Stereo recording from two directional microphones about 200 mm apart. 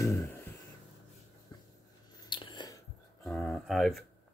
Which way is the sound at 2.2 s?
25° left (ahead or behind).